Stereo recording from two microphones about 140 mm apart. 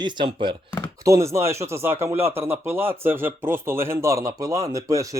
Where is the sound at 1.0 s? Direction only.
20° right (ahead or behind).